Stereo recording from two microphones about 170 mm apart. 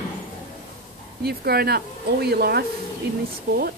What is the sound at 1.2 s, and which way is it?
Speech, 65° right (ahead or behind).